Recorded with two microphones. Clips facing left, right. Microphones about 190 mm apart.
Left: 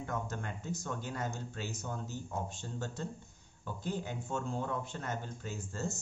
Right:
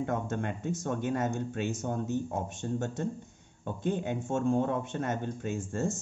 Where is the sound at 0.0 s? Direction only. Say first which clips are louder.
Right 7 dB; 55° right (ahead or behind).